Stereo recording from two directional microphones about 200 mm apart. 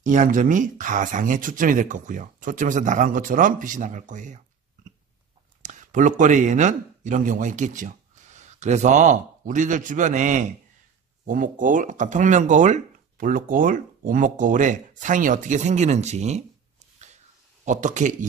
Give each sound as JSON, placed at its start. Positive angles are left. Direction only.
{"t": 0.0, "sound": "speech", "side_deg": -40}
{"t": 5.6, "sound": "speech", "side_deg": -40}
{"t": 17.6, "sound": "speech", "side_deg": -35}